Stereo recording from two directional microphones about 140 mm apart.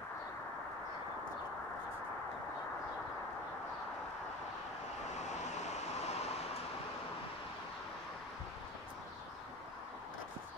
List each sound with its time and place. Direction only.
5.2 s vehicle: 55° left (ahead or behind)